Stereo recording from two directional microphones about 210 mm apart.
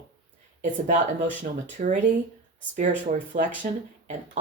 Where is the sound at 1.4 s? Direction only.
35° right (ahead or behind).